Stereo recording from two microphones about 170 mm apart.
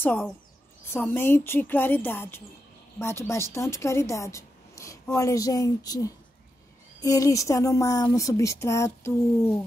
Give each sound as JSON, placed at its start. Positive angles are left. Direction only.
{"t": 0.0, "sound": "speech", "side_deg": 10}